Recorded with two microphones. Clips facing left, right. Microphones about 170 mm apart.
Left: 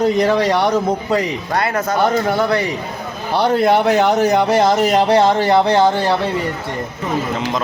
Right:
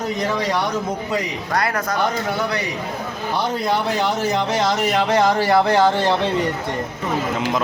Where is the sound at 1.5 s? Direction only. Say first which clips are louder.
Left 2 dB; 25° left (ahead or behind).